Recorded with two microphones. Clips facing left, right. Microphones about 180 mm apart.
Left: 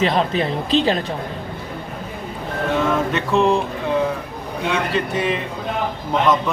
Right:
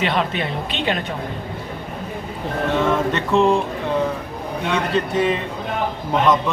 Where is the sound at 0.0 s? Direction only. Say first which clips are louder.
Left 3 dB; 35° left (ahead or behind).